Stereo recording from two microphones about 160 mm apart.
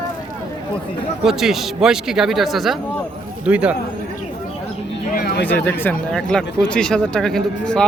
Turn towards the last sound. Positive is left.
turn(degrees=5)  # may be behind; listen again after turning